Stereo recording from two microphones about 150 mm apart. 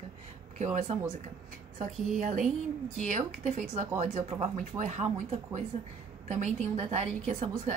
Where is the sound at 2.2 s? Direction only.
55° right (ahead or behind).